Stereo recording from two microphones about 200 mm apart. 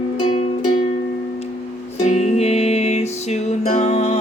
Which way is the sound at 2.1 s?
30° left (ahead or behind).